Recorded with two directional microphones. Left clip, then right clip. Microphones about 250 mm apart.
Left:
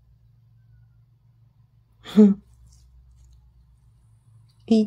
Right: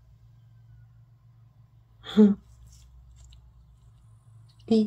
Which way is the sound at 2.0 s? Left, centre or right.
Left.